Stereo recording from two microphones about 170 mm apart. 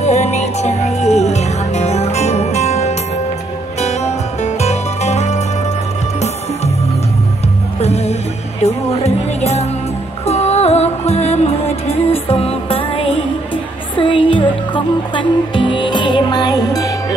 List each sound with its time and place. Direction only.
0.0 s music: 40° left (ahead or behind)
4.6 s music: 40° left (ahead or behind)
7.8 s music: 40° left (ahead or behind); by 16.8 s 20° left (ahead or behind)